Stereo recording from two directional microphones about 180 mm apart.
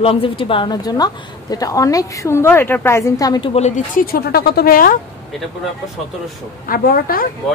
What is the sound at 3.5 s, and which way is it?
Speech, 40° left (ahead or behind).